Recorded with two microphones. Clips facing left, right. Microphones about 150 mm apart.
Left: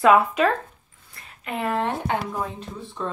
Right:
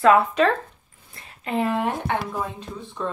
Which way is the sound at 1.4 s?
30° right (ahead or behind).